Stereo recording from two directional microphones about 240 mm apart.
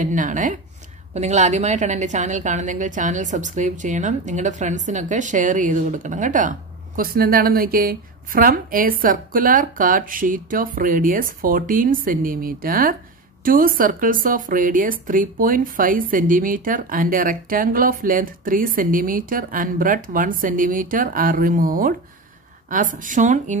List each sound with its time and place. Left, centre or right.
0.0 s a woman's voice: right